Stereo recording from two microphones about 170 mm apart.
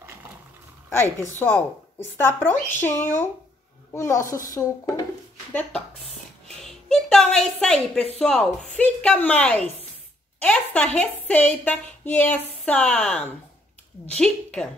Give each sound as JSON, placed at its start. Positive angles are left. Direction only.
{"t": 2.2, "sound": "a woman's voice", "side_deg": 15}
{"t": 5.5, "sound": "a woman's voice", "side_deg": 10}